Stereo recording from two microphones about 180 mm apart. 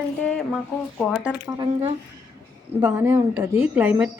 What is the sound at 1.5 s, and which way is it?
Speech, 25° right (ahead or behind).